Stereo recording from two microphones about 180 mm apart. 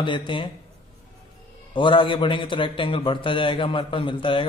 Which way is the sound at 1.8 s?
25° left (ahead or behind).